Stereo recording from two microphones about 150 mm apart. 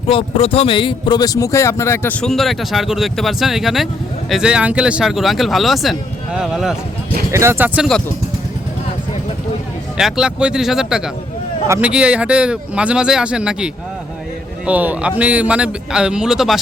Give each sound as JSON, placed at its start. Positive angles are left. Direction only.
{"t": 0.1, "sound": "speech", "side_deg": 35}
{"t": 2.2, "sound": "speech", "side_deg": 0}
{"t": 7.3, "sound": "speech", "side_deg": -20}
{"t": 7.8, "sound": "speech", "side_deg": 5}
{"t": 10.0, "sound": "speech", "side_deg": -5}
{"t": 14.7, "sound": "speech", "side_deg": -10}